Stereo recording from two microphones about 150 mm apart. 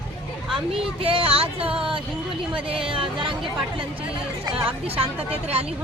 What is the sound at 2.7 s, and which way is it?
Speech, 35° right (ahead or behind).